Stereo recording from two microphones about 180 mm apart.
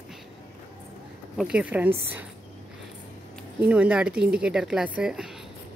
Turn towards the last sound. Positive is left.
turn(degrees=-5)  # may be behind; listen again after turning